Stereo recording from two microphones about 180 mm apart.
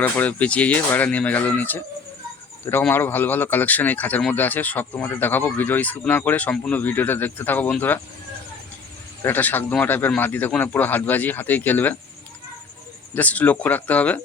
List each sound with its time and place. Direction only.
0.0 s speech: 10° left (ahead or behind)
9.2 s speech: 10° left (ahead or behind)
13.1 s speech: 10° left (ahead or behind)